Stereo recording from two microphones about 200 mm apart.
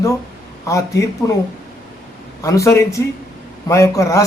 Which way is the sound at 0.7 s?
15° left (ahead or behind).